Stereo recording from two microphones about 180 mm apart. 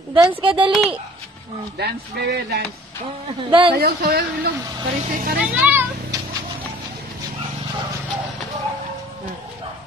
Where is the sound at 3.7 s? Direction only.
60° right (ahead or behind).